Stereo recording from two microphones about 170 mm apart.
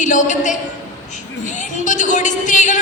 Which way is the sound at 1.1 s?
45° left (ahead or behind).